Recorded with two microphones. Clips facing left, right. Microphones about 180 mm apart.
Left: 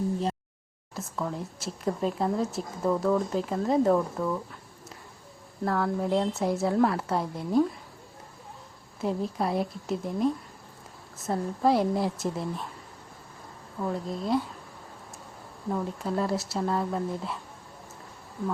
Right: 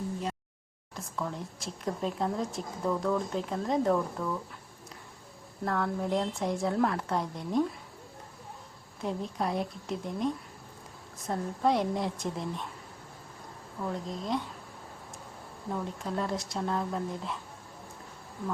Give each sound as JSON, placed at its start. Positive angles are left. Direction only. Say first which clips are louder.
{"t": 0.9, "sound": "a woman's voice", "louder": "left 3 dB", "side_deg": 5}
{"t": 3.9, "sound": "speech", "louder": "left 4 dB", "side_deg": 15}
{"t": 5.6, "sound": "a woman's voice", "louder": "left 3 dB", "side_deg": 5}
{"t": 9.0, "sound": "a woman's voice", "louder": "left 4 dB", "side_deg": 5}
{"t": 13.9, "sound": "a woman's voice", "louder": "left 5 dB", "side_deg": 5}
{"t": 15.7, "sound": "a woman's voice", "louder": "left 4 dB", "side_deg": 5}